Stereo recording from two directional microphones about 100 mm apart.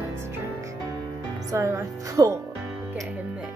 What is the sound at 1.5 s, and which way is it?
Speech, 30° right (ahead or behind).